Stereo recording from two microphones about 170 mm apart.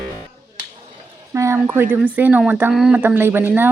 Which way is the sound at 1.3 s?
15° right (ahead or behind).